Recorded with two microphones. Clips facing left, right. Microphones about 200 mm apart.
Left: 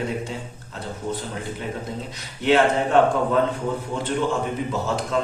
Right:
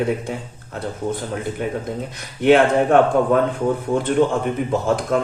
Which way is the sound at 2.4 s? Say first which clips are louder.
Right 5 dB; 55° right (ahead or behind).